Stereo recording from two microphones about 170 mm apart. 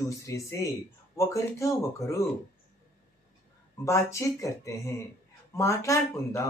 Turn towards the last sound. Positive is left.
turn(degrees=15)  # may be behind; listen again after turning